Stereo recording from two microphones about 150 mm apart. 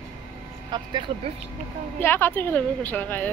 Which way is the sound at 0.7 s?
35° right (ahead or behind).